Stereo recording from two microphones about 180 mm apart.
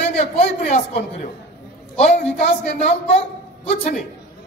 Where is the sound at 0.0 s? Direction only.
35° left (ahead or behind).